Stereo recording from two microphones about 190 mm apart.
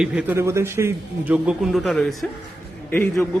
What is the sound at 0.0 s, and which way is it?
A man's voice, 5° right (ahead or behind).